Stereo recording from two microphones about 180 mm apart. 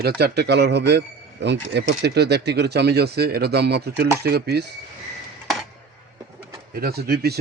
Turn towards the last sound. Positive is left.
turn(degrees=-60)  # may be behind; listen again after turning